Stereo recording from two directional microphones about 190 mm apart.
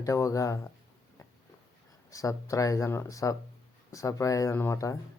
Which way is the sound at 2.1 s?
15° left (ahead or behind).